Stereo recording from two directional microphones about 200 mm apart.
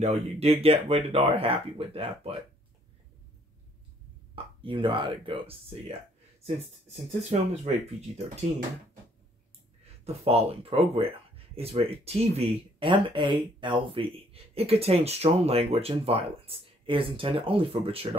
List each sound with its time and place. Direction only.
0.0 s speech: 30° right (ahead or behind)
4.6 s speech: 25° right (ahead or behind)
7.1 s speech: 35° right (ahead or behind)
10.0 s speech: 30° right (ahead or behind)